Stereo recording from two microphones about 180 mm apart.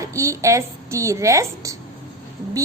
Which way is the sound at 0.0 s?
15° right (ahead or behind).